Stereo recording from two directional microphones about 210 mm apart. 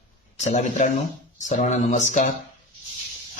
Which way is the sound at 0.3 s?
35° left (ahead or behind).